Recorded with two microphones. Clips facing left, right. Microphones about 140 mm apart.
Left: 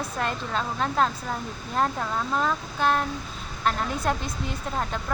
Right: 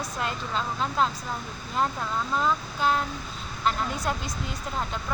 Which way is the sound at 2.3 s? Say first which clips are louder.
Right 1 dB; 50° left (ahead or behind).